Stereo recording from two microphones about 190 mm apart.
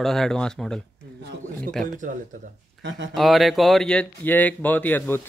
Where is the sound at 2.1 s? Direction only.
45° right (ahead or behind).